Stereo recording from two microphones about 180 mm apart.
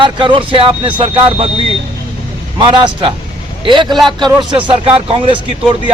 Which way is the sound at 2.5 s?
25° right (ahead or behind).